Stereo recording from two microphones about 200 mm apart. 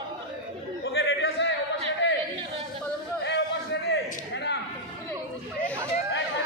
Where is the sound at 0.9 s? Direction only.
60° left (ahead or behind).